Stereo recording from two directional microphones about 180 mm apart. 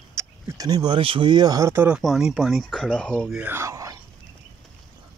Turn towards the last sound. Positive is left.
turn(degrees=-20)  # may be behind; listen again after turning